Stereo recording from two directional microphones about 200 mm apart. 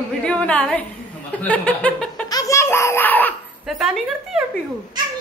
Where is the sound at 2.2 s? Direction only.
15° left (ahead or behind).